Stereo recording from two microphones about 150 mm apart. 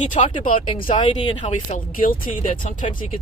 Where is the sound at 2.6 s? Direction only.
50° left (ahead or behind).